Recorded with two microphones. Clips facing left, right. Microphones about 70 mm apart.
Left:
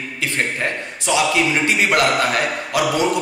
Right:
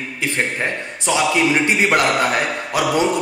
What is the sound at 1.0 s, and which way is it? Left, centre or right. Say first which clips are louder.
Speech: right 1 dB; right.